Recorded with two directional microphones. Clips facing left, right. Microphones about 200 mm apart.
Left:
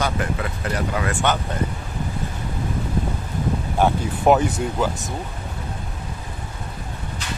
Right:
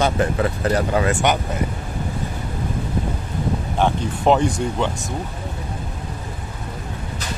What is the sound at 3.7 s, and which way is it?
Speech, 10° left (ahead or behind).